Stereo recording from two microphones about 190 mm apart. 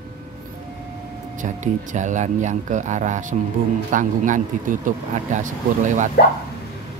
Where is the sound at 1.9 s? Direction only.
40° right (ahead or behind).